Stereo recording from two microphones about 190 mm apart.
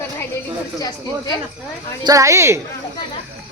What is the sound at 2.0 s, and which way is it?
Speech, 20° right (ahead or behind).